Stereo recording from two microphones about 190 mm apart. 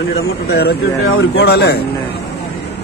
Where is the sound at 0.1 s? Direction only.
60° left (ahead or behind).